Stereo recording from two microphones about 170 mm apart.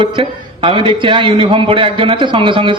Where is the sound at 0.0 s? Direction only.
30° right (ahead or behind).